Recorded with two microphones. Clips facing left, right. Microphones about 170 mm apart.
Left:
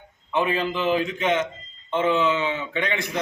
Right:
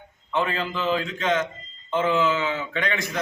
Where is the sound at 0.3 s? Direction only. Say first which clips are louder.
Left 2 dB; 15° left (ahead or behind).